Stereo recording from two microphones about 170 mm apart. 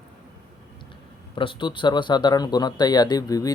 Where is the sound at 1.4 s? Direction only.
30° left (ahead or behind).